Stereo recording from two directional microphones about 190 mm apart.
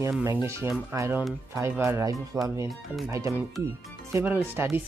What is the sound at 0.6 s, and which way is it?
Speech, 15° right (ahead or behind).